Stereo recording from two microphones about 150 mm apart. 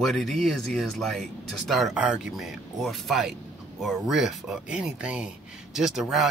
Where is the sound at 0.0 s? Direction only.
Centre (ahead or behind).